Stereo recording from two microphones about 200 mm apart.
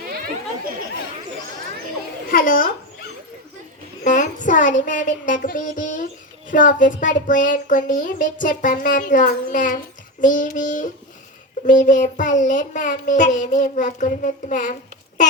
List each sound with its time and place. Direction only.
2.3 s a child's voice: 45° left (ahead or behind)
4.0 s child singing: 40° left (ahead or behind)
6.5 s speech: 40° left (ahead or behind)